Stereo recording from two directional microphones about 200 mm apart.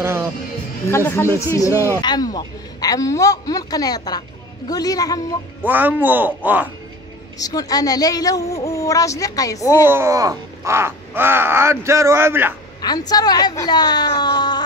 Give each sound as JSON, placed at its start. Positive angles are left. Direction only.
{"t": 0.0, "sound": "music", "side_deg": -15}
{"t": 0.8, "sound": "a woman's voice", "side_deg": 15}
{"t": 5.7, "sound": "speech", "side_deg": -10}
{"t": 7.3, "sound": "a woman's voice", "side_deg": 20}
{"t": 9.8, "sound": "speech", "side_deg": -10}
{"t": 13.1, "sound": "a man's voice", "side_deg": 20}